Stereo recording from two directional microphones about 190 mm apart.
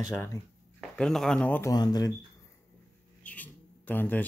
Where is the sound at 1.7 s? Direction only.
20° left (ahead or behind).